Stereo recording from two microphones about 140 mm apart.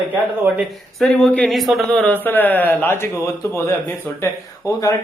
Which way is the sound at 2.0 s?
15° left (ahead or behind).